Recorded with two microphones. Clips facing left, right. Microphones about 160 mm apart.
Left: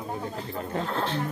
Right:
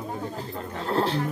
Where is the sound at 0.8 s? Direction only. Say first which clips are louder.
Right 7 dB; 35° right (ahead or behind).